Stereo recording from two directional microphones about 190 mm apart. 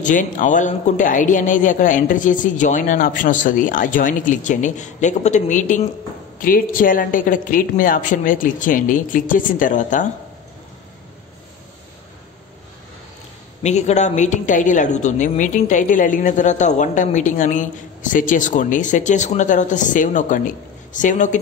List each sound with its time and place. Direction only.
0.0 s a man's voice: 45° left (ahead or behind)
13.6 s a woman's voice: 35° left (ahead or behind)